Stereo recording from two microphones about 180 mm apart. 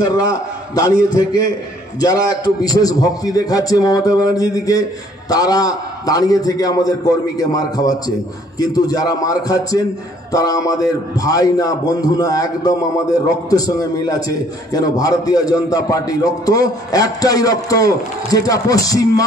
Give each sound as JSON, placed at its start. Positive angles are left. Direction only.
{"t": 0.0, "sound": "a man's voice", "side_deg": 20}